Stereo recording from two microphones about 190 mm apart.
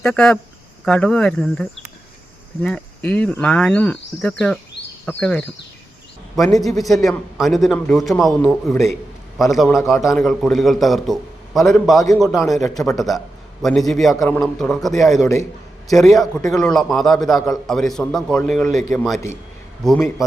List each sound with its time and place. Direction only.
0.0 s a man's voice: 5° left (ahead or behind)
6.6 s a man's voice: centre (ahead or behind)
15.2 s a man's voice: 15° left (ahead or behind)
15.9 s a man's voice: centre (ahead or behind)